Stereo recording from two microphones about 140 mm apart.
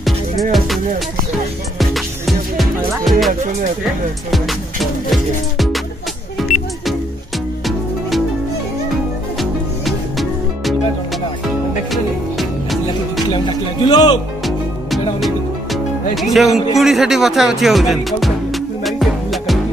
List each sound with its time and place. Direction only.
0.0 s music: centre (ahead or behind)
1.8 s music: centre (ahead or behind)
5.1 s music: centre (ahead or behind)
9.4 s music: centre (ahead or behind)
13.3 s speech: 30° left (ahead or behind)
14.4 s music: centre (ahead or behind)